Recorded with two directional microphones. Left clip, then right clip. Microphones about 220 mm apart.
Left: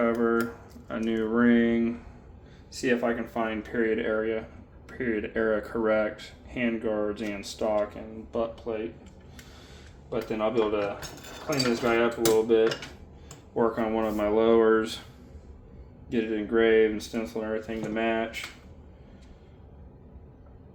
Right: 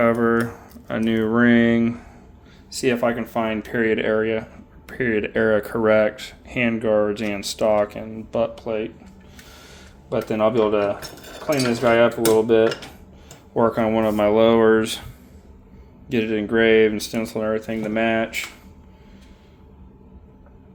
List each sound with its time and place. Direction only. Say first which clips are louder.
0.0 s speech: right 7 dB; 50° right (ahead or behind)
10.1 s speech: right 8 dB; 50° right (ahead or behind)
12.4 s speech: right 6 dB; 50° right (ahead or behind)
16.0 s speech: right 6 dB; 50° right (ahead or behind)